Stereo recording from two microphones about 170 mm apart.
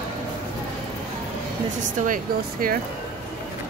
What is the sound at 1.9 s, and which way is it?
Speech, 55° right (ahead or behind).